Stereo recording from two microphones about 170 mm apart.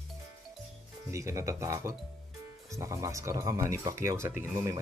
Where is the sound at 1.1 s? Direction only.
15° right (ahead or behind).